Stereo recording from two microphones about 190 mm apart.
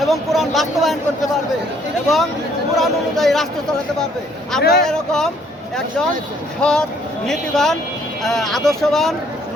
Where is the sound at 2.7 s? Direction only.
Centre (ahead or behind).